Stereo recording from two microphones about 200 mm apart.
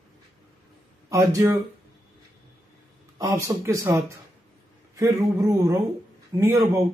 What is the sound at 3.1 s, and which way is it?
A man's voice, 15° right (ahead or behind).